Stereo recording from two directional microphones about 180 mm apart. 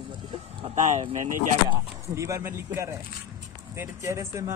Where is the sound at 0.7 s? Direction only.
40° right (ahead or behind).